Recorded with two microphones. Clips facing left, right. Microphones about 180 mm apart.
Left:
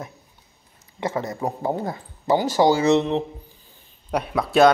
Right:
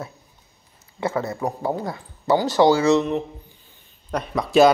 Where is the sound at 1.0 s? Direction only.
20° left (ahead or behind).